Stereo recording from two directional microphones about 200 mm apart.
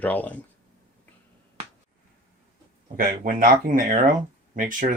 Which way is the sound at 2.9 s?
45° right (ahead or behind).